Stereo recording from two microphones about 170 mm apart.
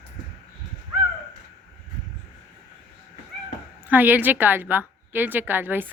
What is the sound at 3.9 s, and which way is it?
A woman's voice, 10° right (ahead or behind).